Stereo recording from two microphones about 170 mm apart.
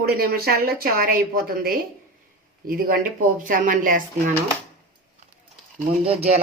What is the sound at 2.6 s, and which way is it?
Speech, 60° right (ahead or behind).